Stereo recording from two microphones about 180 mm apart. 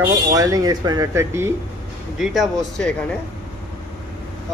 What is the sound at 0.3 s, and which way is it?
Speech, 20° right (ahead or behind).